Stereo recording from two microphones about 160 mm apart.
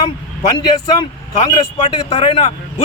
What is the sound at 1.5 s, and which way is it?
A man's voice, 30° left (ahead or behind).